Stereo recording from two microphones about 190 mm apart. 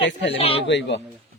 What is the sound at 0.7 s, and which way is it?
Speech, 70° left (ahead or behind).